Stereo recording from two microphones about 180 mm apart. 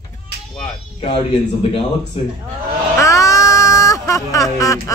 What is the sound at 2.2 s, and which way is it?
Speech, 35° left (ahead or behind).